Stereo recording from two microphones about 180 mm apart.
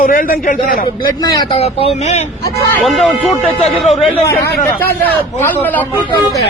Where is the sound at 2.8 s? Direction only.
Centre (ahead or behind).